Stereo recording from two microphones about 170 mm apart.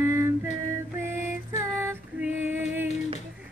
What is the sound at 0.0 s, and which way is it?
Music, 15° right (ahead or behind).